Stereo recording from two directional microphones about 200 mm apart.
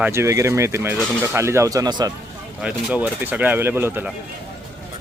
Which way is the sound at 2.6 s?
5° right (ahead or behind).